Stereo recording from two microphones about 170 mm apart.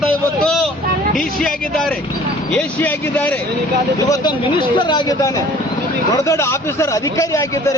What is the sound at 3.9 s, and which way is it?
A man's voice, 20° left (ahead or behind).